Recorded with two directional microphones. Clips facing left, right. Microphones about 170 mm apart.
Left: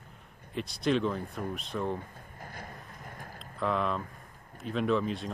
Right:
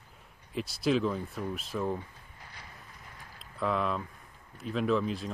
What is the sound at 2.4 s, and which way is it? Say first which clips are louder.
Vehicle: left 7 dB; 50° left (ahead or behind).